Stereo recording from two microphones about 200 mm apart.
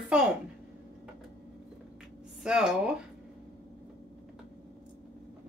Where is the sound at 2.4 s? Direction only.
5° right (ahead or behind).